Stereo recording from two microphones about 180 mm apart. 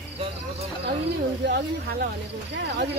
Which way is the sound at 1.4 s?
60° right (ahead or behind).